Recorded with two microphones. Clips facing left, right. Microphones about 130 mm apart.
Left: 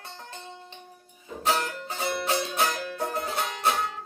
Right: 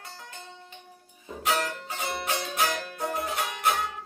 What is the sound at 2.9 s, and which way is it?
Music, 30° left (ahead or behind).